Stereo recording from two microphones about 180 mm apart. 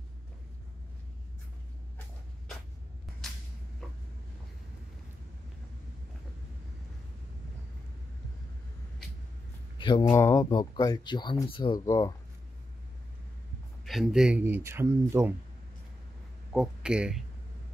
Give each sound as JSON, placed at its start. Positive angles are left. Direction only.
{"t": 3.8, "sound": "vehicle", "side_deg": 5}
{"t": 9.8, "sound": "a sound", "side_deg": 25}
{"t": 10.1, "sound": "speech", "side_deg": 15}
{"t": 13.8, "sound": "speech", "side_deg": 0}
{"t": 16.5, "sound": "speech", "side_deg": -5}